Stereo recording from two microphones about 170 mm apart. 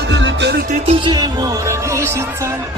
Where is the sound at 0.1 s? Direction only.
90° right.